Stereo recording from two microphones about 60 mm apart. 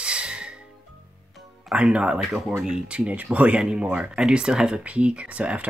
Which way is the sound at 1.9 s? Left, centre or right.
Centre.